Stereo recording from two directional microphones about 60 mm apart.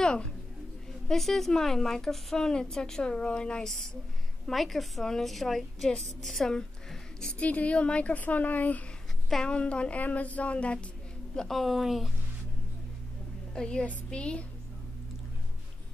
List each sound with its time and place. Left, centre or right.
0.0 s speech: centre
1.0 s a woman's voice: centre
7.3 s a woman's voice: left
9.3 s a woman's voice: centre
11.3 s a woman's voice: centre
13.6 s a woman's voice: centre